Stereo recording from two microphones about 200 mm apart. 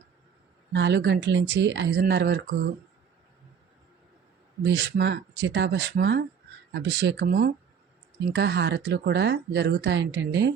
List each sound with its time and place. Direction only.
0.7 s speech: 60° right (ahead or behind)
4.6 s speech: 60° right (ahead or behind); by 7.5 s 45° right (ahead or behind)
8.3 s speech: 60° right (ahead or behind)